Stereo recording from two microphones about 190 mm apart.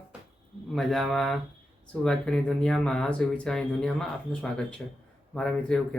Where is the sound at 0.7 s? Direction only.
Centre (ahead or behind).